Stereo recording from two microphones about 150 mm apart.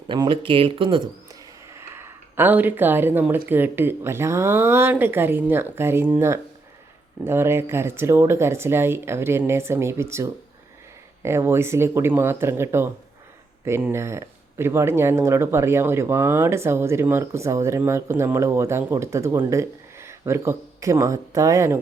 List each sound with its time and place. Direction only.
0.1 s speech: 35° right (ahead or behind)
2.0 s speech: 15° right (ahead or behind)